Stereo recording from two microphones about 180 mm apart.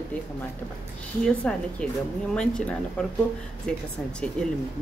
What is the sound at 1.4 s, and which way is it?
A woman's voice, 5° left (ahead or behind).